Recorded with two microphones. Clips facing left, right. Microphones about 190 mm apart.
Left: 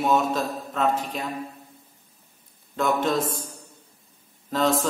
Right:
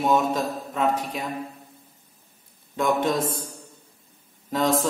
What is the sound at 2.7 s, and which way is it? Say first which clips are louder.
Speech: right 1 dB; 15° right (ahead or behind).